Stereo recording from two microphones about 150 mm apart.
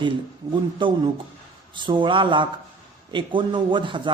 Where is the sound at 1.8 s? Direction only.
35° right (ahead or behind).